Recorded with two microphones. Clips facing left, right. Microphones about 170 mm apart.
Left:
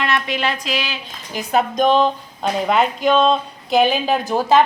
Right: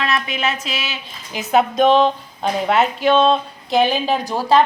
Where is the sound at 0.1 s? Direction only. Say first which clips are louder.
Left 1 dB; 5° right (ahead or behind).